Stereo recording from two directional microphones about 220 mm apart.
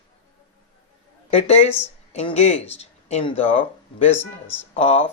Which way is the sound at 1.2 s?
30° left (ahead or behind).